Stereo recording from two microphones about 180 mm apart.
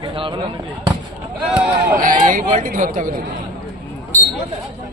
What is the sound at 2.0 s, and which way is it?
Speech, 45° right (ahead or behind).